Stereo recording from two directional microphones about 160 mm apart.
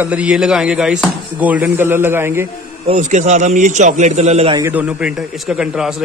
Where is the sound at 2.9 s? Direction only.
50° right (ahead or behind).